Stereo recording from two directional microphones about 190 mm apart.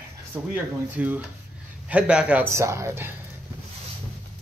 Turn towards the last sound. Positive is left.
turn(degrees=-15)  # may be behind; listen again after turning